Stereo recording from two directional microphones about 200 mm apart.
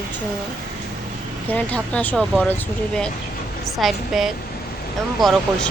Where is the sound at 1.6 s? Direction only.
5° left (ahead or behind).